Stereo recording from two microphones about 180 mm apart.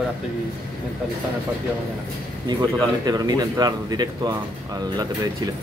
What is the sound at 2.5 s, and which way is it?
Speech, 20° right (ahead or behind).